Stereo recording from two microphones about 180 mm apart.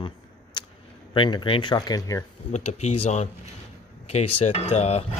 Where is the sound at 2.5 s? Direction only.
35° left (ahead or behind).